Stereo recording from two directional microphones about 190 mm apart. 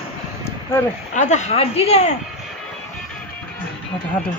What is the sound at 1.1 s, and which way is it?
Speech, 40° left (ahead or behind).